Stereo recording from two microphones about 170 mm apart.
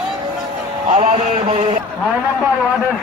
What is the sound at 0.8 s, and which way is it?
Speech, 45° right (ahead or behind).